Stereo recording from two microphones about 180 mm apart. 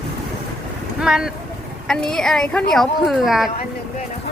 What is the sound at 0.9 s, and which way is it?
Speech, 5° right (ahead or behind).